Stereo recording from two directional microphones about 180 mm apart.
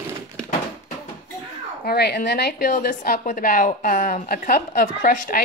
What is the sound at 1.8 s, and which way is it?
A woman's voice, 60° left (ahead or behind).